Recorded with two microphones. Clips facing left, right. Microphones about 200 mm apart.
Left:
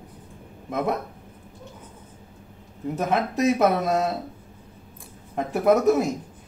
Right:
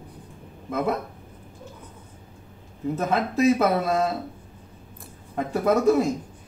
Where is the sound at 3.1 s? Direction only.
20° left (ahead or behind).